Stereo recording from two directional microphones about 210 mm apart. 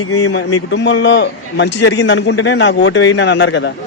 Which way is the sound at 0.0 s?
90° left.